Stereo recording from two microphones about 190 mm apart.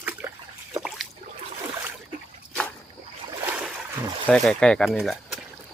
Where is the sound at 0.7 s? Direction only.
5° right (ahead or behind).